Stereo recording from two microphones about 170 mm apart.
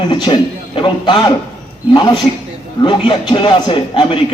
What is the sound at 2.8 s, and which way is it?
A man's voice, 25° left (ahead or behind).